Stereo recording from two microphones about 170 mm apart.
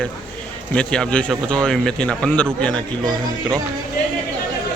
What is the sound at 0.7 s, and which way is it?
Speech, 5° left (ahead or behind).